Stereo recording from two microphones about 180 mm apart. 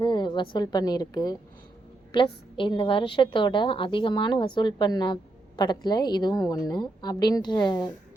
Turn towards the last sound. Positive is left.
turn(degrees=25)  # may be behind; listen again after turning